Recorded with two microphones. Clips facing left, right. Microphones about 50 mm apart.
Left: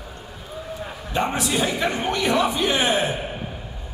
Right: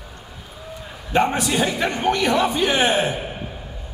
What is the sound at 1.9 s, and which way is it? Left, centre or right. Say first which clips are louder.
Speech: right 4 dB; left.